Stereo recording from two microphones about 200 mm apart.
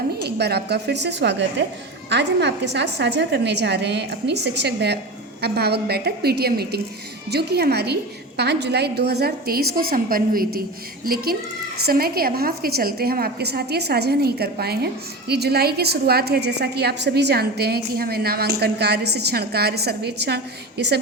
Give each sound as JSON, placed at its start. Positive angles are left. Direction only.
{"t": 0.2, "sound": "a woman's voice", "side_deg": -55}